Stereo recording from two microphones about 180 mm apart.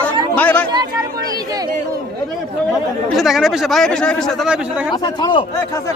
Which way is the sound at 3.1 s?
Centre (ahead or behind).